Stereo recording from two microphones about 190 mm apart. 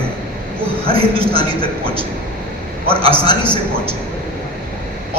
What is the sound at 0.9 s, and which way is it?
Speech, 30° right (ahead or behind).